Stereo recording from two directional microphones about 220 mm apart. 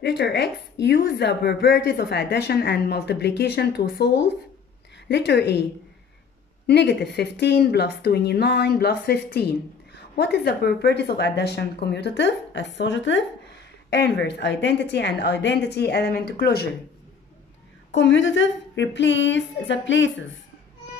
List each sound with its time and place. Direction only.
0.0 s a woman's voice: 50° left (ahead or behind)
6.7 s a woman's voice: 50° left (ahead or behind)
17.9 s a woman's voice: 55° left (ahead or behind)